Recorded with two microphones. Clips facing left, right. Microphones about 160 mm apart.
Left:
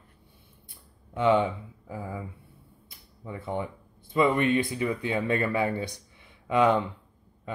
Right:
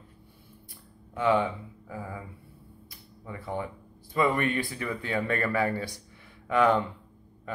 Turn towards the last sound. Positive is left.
turn(degrees=20)  # may be behind; listen again after turning